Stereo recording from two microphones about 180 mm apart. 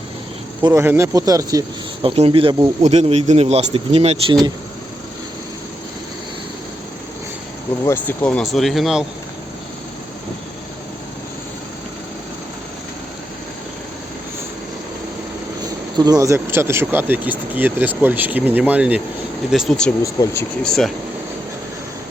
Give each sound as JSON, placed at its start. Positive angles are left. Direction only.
{"t": 0.6, "sound": "speech", "side_deg": -15}
{"t": 7.9, "sound": "speech", "side_deg": 10}
{"t": 16.0, "sound": "speech", "side_deg": -20}
{"t": 20.0, "sound": "speech", "side_deg": 15}
{"t": 20.7, "sound": "speech", "side_deg": 0}